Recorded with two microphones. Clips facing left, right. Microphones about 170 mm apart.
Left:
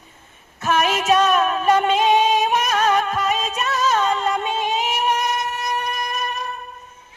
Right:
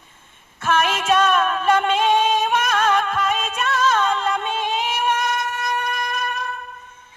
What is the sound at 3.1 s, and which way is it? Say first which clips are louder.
Music: left 1 dB; 40° left (ahead or behind).